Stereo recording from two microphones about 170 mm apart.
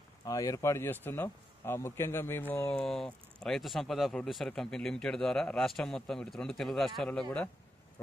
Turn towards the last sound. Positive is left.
turn(degrees=5)  # may be behind; listen again after turning